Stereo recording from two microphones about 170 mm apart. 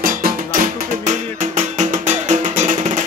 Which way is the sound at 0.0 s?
55° right (ahead or behind).